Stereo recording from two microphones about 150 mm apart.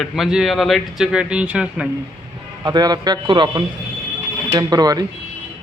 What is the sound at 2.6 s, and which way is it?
A man's voice, 25° right (ahead or behind).